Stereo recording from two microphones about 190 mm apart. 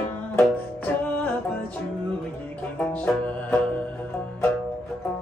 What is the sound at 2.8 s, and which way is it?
Music, 5° left (ahead or behind).